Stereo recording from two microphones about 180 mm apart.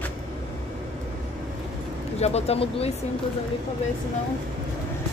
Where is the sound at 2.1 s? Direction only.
35° left (ahead or behind).